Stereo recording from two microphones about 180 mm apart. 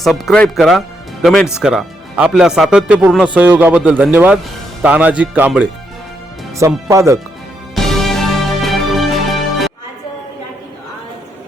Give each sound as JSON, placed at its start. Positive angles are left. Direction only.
{"t": 0.0, "sound": "a man's voice", "side_deg": 0}
{"t": 7.8, "sound": "music", "side_deg": 0}